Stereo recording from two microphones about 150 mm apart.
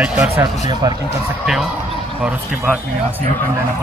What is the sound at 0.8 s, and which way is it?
Speech, 25° right (ahead or behind).